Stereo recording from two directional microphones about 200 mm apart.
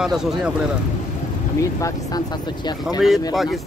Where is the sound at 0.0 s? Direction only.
Centre (ahead or behind).